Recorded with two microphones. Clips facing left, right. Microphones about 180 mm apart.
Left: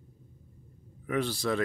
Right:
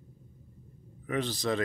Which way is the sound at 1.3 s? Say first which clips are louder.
Even; 20° right (ahead or behind).